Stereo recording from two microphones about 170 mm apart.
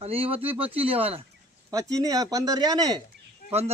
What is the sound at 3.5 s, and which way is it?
Speech, 40° right (ahead or behind).